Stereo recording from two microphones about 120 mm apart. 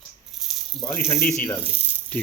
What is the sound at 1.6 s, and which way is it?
Speech, 15° right (ahead or behind).